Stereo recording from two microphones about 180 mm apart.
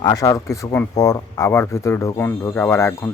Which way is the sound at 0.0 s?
20° left (ahead or behind).